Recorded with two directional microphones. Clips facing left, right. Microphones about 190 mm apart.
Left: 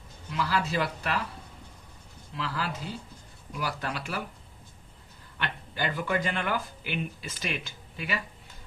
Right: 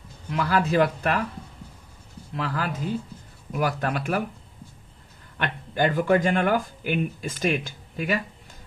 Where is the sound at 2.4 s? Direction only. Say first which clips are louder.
Right 5 dB; 50° right (ahead or behind).